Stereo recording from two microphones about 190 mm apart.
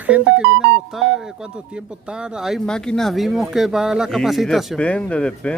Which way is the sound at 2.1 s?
5° right (ahead or behind).